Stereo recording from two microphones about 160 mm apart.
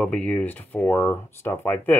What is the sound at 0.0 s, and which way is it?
Speech, 5° left (ahead or behind).